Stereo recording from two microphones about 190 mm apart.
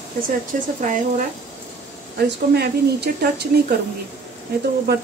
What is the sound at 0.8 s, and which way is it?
Speech, 40° right (ahead or behind).